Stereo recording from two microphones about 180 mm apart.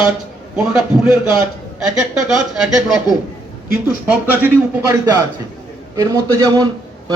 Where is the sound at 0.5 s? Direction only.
5° right (ahead or behind).